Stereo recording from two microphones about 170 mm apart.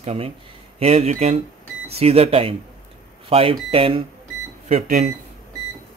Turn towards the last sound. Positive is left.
turn(degrees=-45)  # may be behind; listen again after turning